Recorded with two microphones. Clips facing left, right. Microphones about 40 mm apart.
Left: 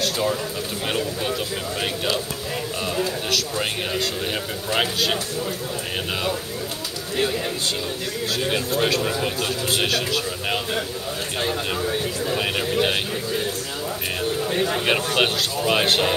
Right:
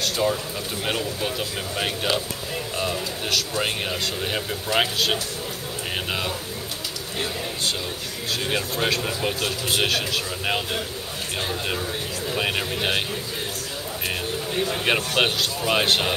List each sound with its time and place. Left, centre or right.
0.0 s a sound: centre
0.8 s speech: centre
3.3 s speech: centre
8.4 s speech: centre
11.4 s speech: centre
12.4 s speech: centre
14.5 s speech: left
14.9 s speech: centre